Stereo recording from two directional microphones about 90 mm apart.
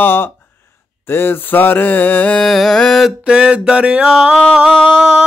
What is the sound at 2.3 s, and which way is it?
Carnatic music, centre (ahead or behind).